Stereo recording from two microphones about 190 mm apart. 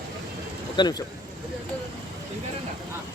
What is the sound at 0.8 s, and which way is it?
Speech, 20° left (ahead or behind).